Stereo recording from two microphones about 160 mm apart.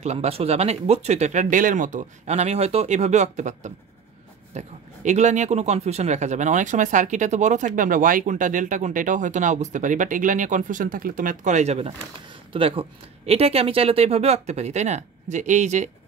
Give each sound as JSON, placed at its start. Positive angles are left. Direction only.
{"t": 0.0, "sound": "a man's voice", "side_deg": -40}